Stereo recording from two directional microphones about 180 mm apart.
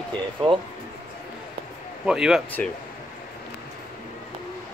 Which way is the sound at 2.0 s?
5° right (ahead or behind).